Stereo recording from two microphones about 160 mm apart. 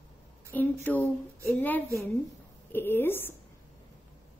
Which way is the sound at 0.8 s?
10° left (ahead or behind).